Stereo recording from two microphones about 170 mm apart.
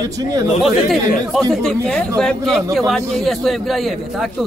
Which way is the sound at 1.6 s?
5° left (ahead or behind).